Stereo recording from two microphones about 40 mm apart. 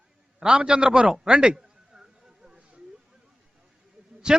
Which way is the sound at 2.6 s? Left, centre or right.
Right.